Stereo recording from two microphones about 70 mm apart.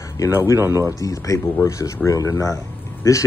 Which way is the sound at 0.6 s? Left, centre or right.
Right.